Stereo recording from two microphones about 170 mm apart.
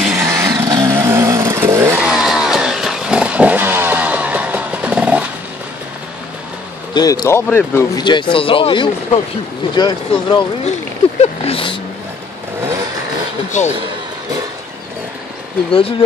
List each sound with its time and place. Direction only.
0.0 s vehicle: 15° right (ahead or behind)
2.0 s vehicle: 5° right (ahead or behind)
6.9 s speech: 25° left (ahead or behind)
8.0 s speech: 25° left (ahead or behind)
11.1 s a sound: 35° left (ahead or behind)
13.5 s speech: 45° left (ahead or behind)